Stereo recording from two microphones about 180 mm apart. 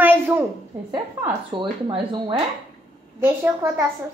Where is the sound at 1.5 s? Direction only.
25° right (ahead or behind).